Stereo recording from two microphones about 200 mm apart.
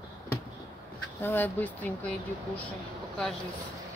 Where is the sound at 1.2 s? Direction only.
10° left (ahead or behind).